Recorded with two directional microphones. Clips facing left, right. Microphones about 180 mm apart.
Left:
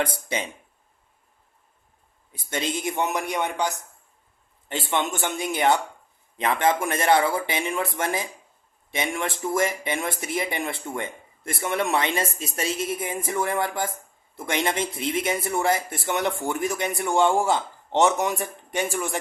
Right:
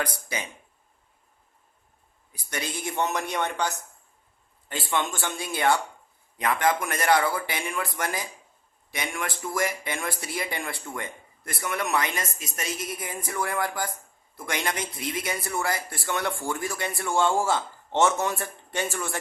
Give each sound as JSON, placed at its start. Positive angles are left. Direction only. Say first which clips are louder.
{"t": 0.0, "sound": "speech", "louder": "left 4 dB", "side_deg": 25}
{"t": 2.3, "sound": "a man's voice", "louder": "left 5 dB", "side_deg": 25}